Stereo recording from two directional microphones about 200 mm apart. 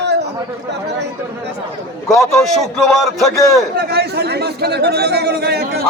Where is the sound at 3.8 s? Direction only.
55° right (ahead or behind).